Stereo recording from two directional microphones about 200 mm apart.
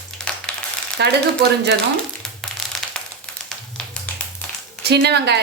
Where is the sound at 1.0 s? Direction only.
55° right (ahead or behind).